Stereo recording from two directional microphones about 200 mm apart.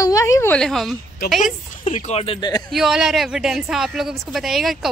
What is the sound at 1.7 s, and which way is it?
Speech, 40° left (ahead or behind).